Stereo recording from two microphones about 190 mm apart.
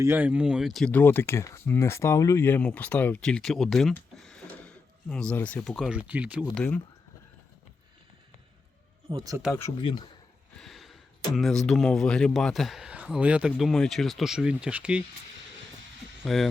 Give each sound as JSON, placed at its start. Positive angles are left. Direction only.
{"t": 0.0, "sound": "speech", "side_deg": -10}
{"t": 6.5, "sound": "speech", "side_deg": 10}
{"t": 9.0, "sound": "speech", "side_deg": -25}
{"t": 9.5, "sound": "speech", "side_deg": 25}
{"t": 10.6, "sound": "a sound", "side_deg": 0}
{"t": 11.3, "sound": "speech", "side_deg": 0}
{"t": 16.2, "sound": "speech", "side_deg": 0}